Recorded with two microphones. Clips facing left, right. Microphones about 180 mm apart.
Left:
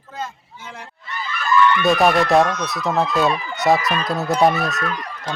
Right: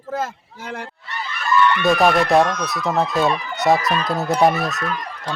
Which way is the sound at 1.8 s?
Centre (ahead or behind).